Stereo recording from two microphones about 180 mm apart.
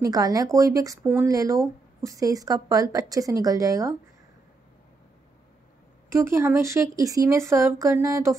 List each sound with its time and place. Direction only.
0.0 s speech: 20° right (ahead or behind)
6.0 s speech: 15° right (ahead or behind)